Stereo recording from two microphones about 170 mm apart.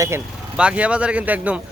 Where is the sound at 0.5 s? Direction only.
5° right (ahead or behind).